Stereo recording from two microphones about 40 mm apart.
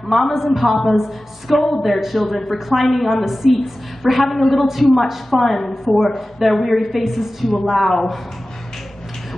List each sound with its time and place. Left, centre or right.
0.0 s a woman's voice: centre
7.4 s a woman's voice: centre